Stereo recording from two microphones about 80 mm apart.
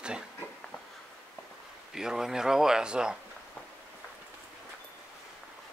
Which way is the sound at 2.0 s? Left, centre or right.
Centre.